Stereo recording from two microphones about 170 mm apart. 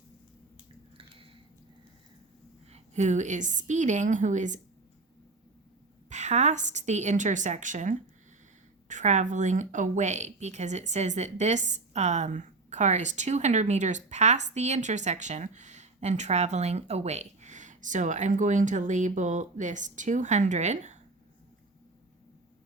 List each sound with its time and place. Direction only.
2.7 s a woman's voice: 45° right (ahead or behind)
6.1 s a woman's voice: 45° right (ahead or behind)